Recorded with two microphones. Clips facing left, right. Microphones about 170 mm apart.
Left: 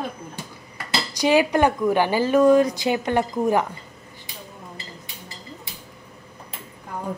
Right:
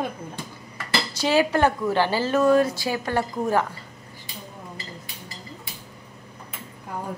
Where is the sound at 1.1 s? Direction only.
15° left (ahead or behind).